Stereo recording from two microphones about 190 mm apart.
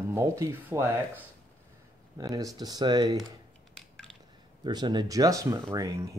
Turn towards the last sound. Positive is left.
turn(degrees=-15)  # may be behind; listen again after turning